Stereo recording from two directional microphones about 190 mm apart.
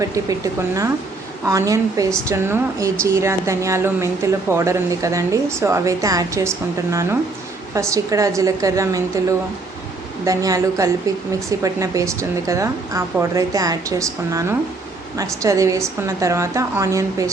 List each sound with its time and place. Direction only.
0.0 s a woman's voice: 20° right (ahead or behind)
1.5 s a woman's voice: 15° right (ahead or behind)
10.2 s a woman's voice: 20° right (ahead or behind)